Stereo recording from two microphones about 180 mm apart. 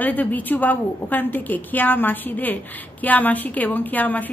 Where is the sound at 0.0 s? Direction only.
10° left (ahead or behind).